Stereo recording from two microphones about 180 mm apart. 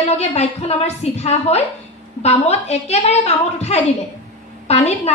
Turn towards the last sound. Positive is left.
turn(degrees=35)  # may be behind; listen again after turning